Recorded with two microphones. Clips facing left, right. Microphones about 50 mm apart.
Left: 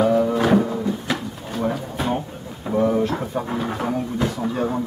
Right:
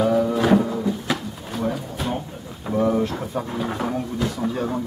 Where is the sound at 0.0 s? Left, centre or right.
Centre.